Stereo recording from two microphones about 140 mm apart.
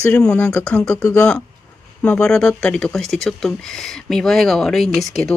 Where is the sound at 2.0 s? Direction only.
5° left (ahead or behind).